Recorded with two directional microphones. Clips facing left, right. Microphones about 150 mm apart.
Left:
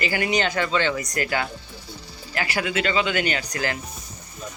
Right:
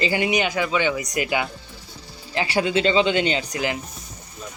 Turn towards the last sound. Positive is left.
turn(degrees=-20)  # may be behind; listen again after turning